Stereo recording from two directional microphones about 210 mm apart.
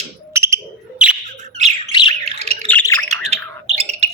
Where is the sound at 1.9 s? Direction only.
20° left (ahead or behind).